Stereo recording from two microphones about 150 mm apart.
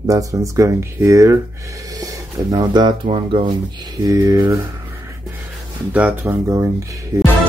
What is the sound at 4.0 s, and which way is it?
Speech, 20° right (ahead or behind).